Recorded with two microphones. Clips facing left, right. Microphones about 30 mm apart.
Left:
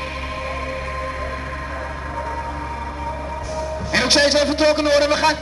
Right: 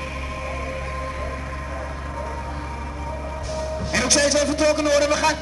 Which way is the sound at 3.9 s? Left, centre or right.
Left.